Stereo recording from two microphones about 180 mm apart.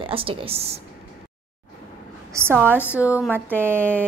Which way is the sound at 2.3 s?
15° right (ahead or behind).